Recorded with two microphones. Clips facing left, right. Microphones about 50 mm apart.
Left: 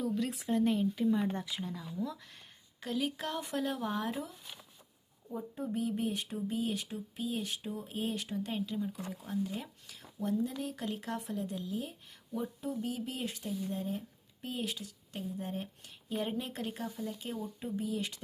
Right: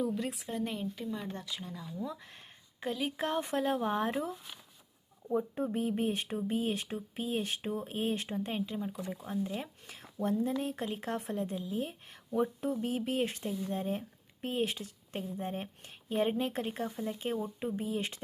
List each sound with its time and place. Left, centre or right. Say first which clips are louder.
0.0 s a sound: even; centre
0.3 s speech: left 5 dB; centre
2.0 s speech: right 1 dB; centre; by 11.5 s right
11.5 s speech: right 1 dB; centre
11.8 s speech: right 4 dB; right